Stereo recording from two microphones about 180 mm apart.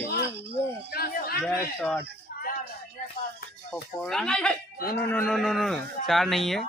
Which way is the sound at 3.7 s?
5° left (ahead or behind).